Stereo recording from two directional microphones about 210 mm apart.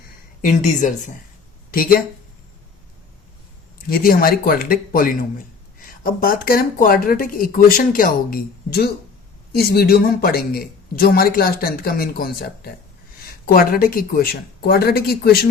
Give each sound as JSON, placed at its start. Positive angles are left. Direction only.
{"t": 0.4, "sound": "a man's voice", "side_deg": 35}
{"t": 3.8, "sound": "a man's voice", "side_deg": 45}